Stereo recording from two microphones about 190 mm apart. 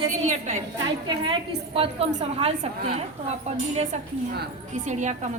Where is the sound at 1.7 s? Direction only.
30° right (ahead or behind).